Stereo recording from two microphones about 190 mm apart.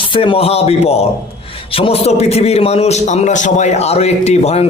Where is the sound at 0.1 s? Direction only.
30° left (ahead or behind).